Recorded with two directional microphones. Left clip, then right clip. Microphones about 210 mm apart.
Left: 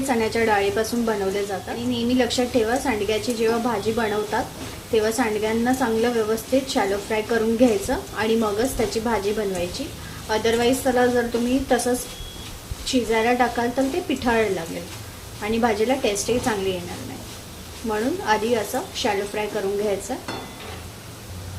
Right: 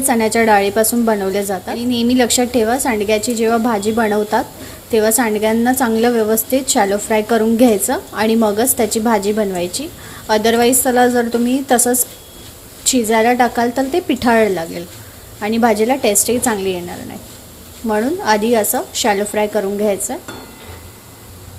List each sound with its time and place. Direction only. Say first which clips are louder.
0.0 s a woman's voice: right 7 dB; 35° right (ahead or behind)
17.8 s a woman's voice: right 7 dB; 35° right (ahead or behind)